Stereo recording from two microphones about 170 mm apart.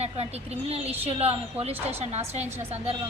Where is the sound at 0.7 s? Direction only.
35° right (ahead or behind).